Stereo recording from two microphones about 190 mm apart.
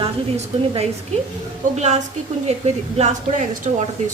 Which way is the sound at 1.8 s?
35° right (ahead or behind).